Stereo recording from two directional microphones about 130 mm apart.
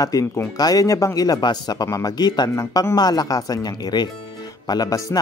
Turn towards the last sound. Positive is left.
turn(degrees=30)  # may be behind; listen again after turning